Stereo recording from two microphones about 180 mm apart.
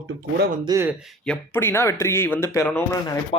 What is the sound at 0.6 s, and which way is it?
Speech, 15° right (ahead or behind).